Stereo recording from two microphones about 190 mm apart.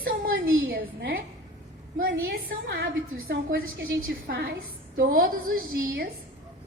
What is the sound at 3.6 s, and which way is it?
Speech, 90° right.